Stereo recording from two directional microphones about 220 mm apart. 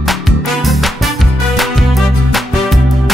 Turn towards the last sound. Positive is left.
turn(degrees=0)  # may be behind; listen again after turning